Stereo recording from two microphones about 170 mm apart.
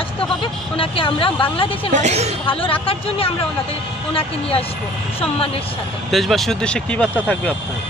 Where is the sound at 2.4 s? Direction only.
30° left (ahead or behind).